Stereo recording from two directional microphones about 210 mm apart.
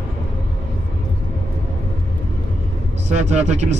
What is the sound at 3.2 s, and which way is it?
Speech, 35° right (ahead or behind).